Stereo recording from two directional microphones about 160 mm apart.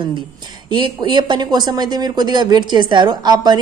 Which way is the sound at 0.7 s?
30° right (ahead or behind).